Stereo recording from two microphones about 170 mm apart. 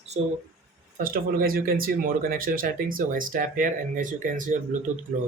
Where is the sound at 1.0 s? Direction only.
55° right (ahead or behind).